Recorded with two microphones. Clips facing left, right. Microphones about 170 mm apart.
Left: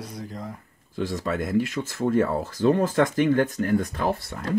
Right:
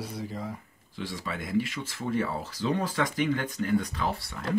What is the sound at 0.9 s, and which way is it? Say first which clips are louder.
Speech: left 8 dB; 45° left (ahead or behind).